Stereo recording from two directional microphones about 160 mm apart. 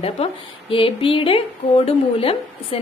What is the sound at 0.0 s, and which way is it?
A woman's voice, 35° left (ahead or behind).